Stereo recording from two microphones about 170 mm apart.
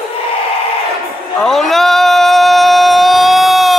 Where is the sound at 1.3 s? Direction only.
Centre (ahead or behind).